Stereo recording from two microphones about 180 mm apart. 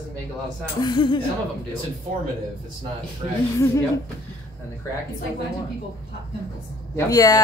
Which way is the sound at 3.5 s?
15° left (ahead or behind).